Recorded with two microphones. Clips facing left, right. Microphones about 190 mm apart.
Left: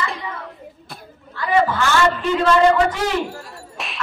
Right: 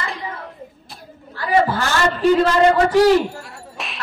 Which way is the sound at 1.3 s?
40° right (ahead or behind).